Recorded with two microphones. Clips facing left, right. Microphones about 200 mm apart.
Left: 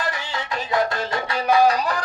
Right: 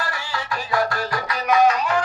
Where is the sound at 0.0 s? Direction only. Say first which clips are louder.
Left 1 dB; 20° left (ahead or behind).